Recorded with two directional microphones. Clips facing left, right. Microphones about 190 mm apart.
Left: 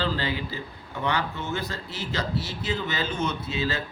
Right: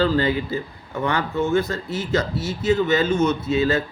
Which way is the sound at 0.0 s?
45° right (ahead or behind).